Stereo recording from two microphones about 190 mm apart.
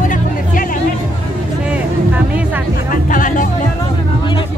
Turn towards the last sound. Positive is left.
turn(degrees=45)  # may be behind; listen again after turning